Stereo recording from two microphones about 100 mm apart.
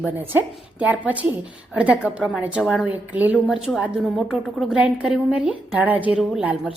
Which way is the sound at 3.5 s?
5° right (ahead or behind).